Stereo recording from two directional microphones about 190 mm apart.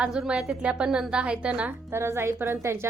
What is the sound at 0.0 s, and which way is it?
A woman's voice, 5° right (ahead or behind).